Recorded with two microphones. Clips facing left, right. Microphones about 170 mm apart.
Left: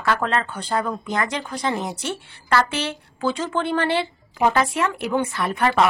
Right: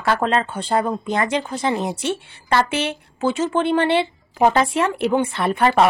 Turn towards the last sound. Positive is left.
turn(degrees=-30)  # may be behind; listen again after turning